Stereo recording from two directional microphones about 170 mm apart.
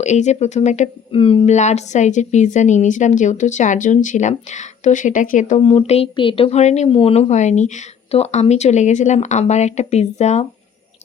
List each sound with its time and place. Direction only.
0.0 s speech: 40° left (ahead or behind)